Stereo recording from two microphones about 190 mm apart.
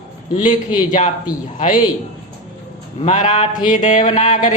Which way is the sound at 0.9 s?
40° left (ahead or behind).